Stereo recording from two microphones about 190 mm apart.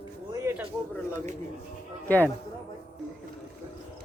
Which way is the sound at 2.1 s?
10° left (ahead or behind).